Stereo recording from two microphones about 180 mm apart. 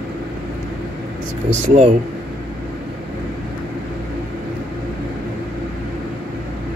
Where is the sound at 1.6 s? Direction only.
40° right (ahead or behind).